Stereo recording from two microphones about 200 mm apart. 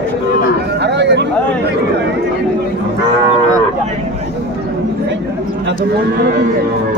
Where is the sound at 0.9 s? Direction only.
60° right (ahead or behind).